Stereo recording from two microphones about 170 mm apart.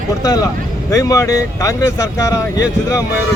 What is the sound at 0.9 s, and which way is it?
Speech, 20° left (ahead or behind).